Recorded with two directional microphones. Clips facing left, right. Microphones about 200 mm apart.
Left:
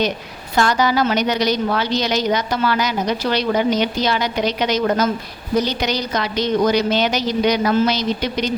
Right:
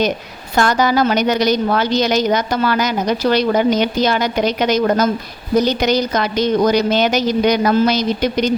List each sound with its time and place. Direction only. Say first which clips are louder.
0.5 s a woman's voice: right 2 dB; 50° right (ahead or behind)